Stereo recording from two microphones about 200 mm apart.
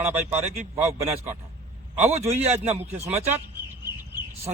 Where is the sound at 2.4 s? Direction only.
30° right (ahead or behind).